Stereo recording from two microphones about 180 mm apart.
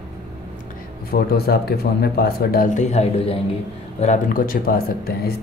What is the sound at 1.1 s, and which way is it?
Speech, 60° left (ahead or behind).